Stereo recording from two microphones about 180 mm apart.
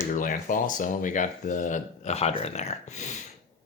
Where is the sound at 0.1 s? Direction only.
45° left (ahead or behind).